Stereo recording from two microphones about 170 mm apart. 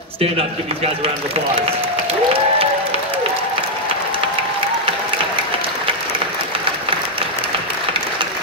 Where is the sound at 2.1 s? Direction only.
35° right (ahead or behind).